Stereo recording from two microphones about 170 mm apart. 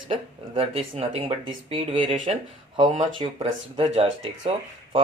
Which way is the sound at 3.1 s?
30° right (ahead or behind).